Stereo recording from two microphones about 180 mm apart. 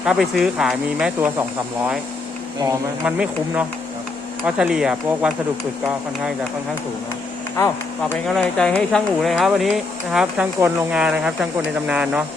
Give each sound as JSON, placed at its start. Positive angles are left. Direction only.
{"t": 0.0, "sound": "speech", "side_deg": -5}
{"t": 3.0, "sound": "speech", "side_deg": -5}
{"t": 8.3, "sound": "speech", "side_deg": 5}